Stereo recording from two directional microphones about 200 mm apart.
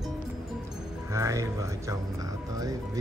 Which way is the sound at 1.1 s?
15° right (ahead or behind).